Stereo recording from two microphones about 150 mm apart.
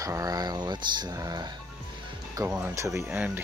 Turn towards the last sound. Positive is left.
turn(degrees=-10)  # may be behind; listen again after turning